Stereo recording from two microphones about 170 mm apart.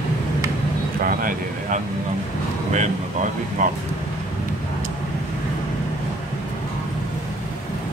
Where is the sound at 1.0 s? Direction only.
55° right (ahead or behind).